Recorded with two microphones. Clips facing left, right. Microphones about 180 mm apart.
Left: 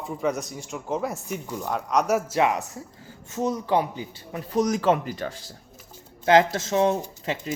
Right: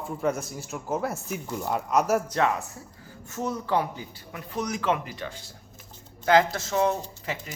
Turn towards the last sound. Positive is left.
turn(degrees=25)  # may be behind; listen again after turning